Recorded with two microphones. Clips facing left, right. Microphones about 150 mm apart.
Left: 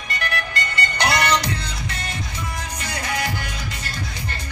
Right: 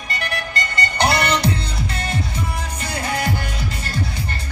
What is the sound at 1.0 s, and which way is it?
Music, 30° right (ahead or behind).